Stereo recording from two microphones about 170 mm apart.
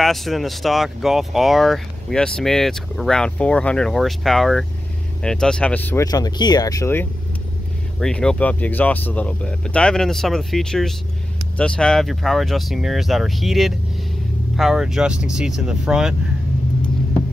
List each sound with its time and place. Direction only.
0.0 s speech: centre (ahead or behind)
6.0 s speech: 20° left (ahead or behind)
8.0 s speech: 5° left (ahead or behind)